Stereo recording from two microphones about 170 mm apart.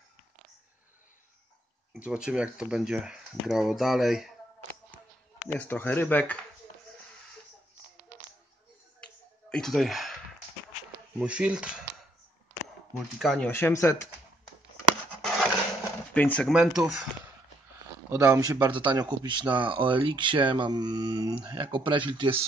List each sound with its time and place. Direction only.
2.0 s speech: 5° right (ahead or behind)
5.6 s speech: 10° left (ahead or behind)
9.0 s finger snapping: 5° left (ahead or behind)
11.1 s speech: 5° right (ahead or behind)
12.9 s speech: centre (ahead or behind)
13.5 s speech: 15° left (ahead or behind)
16.1 s speech: 5° left (ahead or behind)
16.5 s speech: 5° right (ahead or behind)
18.1 s speech: 15° right (ahead or behind)